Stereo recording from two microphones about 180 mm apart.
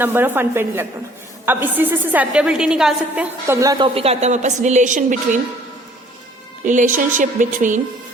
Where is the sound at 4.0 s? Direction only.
35° right (ahead or behind).